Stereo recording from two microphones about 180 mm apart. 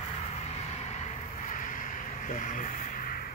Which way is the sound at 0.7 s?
40° left (ahead or behind).